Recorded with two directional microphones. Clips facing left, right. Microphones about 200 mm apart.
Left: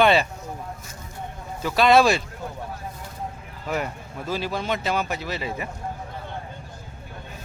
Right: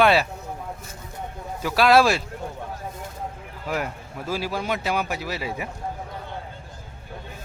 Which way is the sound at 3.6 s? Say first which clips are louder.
Even; 5° right (ahead or behind).